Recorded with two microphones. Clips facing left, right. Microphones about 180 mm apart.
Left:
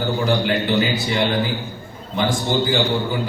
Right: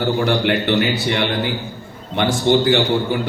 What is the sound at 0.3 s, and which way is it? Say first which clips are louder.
A man's voice: right 2 dB; 70° right (ahead or behind).